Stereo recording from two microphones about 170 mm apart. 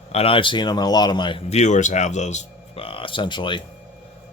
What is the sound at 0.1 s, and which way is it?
Speech, 35° left (ahead or behind).